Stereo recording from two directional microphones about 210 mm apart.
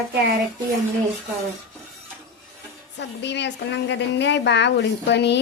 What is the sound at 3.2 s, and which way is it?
Speech, 55° left (ahead or behind).